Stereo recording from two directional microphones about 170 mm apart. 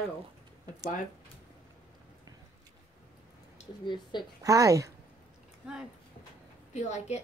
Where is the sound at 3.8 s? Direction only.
25° left (ahead or behind).